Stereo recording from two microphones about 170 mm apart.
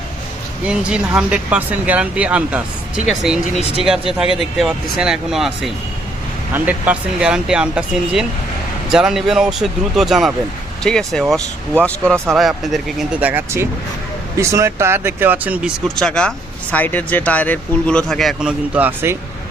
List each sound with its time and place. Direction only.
0.7 s speech: 5° right (ahead or behind)
3.6 s speech: 35° left (ahead or behind)
4.2 s speech: 5° right (ahead or behind)
12.0 s speech: 15° right (ahead or behind)
12.3 s speech: centre (ahead or behind)
16.0 s speech: 5° left (ahead or behind)